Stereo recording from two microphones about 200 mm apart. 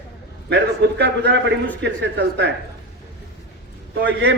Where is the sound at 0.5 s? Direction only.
60° right (ahead or behind).